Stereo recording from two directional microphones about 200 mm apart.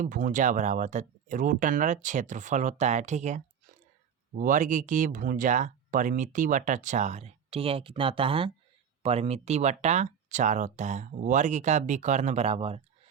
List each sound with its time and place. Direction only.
0.0 s speech: 40° right (ahead or behind)